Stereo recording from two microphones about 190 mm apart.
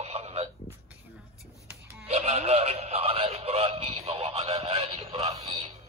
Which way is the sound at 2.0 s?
30° right (ahead or behind).